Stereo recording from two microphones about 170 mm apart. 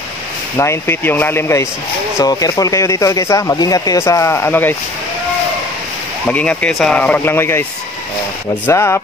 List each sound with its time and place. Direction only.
0.6 s speech: 15° left (ahead or behind)
6.2 s speech: 10° left (ahead or behind)
8.6 s speech: 15° left (ahead or behind)